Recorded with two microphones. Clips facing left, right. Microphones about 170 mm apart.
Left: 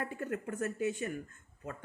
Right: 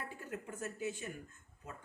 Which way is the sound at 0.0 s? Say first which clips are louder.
Left 8 dB; 60° left (ahead or behind).